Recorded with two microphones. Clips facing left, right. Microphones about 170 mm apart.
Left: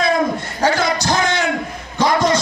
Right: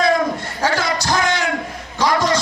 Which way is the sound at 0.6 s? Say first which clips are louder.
Left 3 dB; 20° left (ahead or behind).